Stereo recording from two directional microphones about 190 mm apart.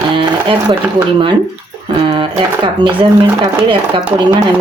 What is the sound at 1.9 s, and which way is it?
Speech, 25° right (ahead or behind).